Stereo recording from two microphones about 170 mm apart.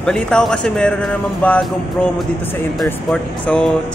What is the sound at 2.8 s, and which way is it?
Speech, 5° left (ahead or behind).